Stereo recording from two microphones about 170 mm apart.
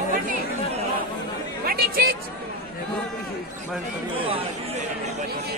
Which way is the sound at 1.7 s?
60° right (ahead or behind).